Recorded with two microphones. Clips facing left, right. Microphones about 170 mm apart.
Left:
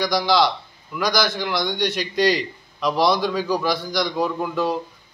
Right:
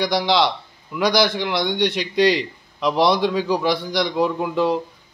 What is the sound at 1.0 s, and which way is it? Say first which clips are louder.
Speech: right 4 dB; 60° right (ahead or behind).